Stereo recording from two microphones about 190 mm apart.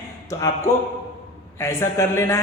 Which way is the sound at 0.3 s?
20° left (ahead or behind).